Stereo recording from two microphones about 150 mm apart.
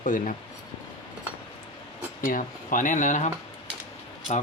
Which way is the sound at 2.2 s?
65° left (ahead or behind).